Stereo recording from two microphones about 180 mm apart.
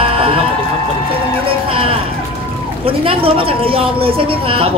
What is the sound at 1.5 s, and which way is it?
Music, 30° right (ahead or behind).